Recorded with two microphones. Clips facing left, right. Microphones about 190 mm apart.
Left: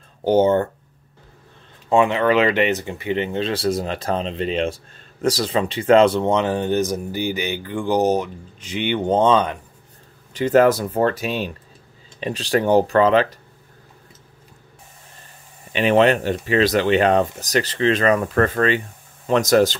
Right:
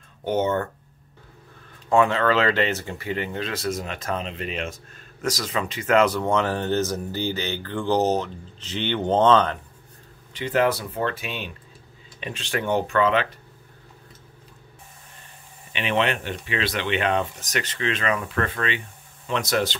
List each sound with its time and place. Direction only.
0.2 s speech: 30° left (ahead or behind)
1.9 s speech: 20° left (ahead or behind)
10.3 s speech: 45° left (ahead or behind)
15.7 s speech: 40° left (ahead or behind)